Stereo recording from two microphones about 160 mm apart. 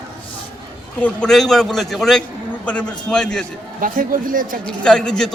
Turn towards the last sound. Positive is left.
turn(degrees=5)  # may be behind; listen again after turning